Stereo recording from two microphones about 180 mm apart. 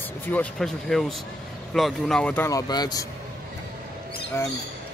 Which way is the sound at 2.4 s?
20° left (ahead or behind).